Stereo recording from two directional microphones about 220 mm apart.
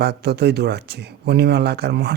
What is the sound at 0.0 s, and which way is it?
Speech, 50° right (ahead or behind).